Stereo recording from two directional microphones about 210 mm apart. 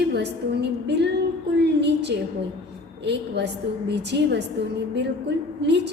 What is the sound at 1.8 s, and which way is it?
A woman's voice, 55° right (ahead or behind).